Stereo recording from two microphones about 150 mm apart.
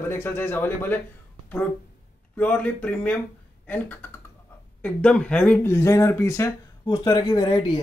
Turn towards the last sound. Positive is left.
turn(degrees=35)  # may be behind; listen again after turning